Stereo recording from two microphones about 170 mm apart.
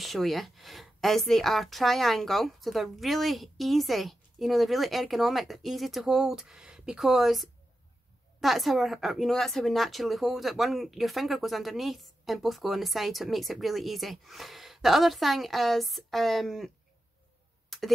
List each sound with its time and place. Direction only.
0.0 s speech: centre (ahead or behind)
17.6 s tick: centre (ahead or behind)